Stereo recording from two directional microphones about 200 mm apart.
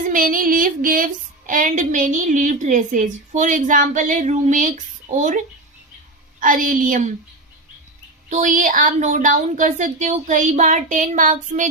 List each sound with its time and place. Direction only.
0.1 s female singing: 45° right (ahead or behind)
6.4 s female singing: 40° right (ahead or behind)
8.3 s female singing: 40° right (ahead or behind)